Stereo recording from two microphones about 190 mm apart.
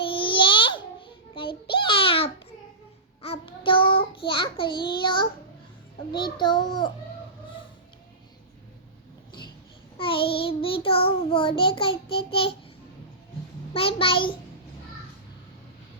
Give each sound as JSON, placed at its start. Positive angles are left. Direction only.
{"t": 0.0, "sound": "a sound", "side_deg": 25}
{"t": 3.2, "sound": "child singing", "side_deg": 30}
{"t": 4.3, "sound": "a child's voice", "side_deg": 25}
{"t": 10.0, "sound": "child singing", "side_deg": 30}
{"t": 12.1, "sound": "a child's voice", "side_deg": 30}
{"t": 13.7, "sound": "a child's voice", "side_deg": 30}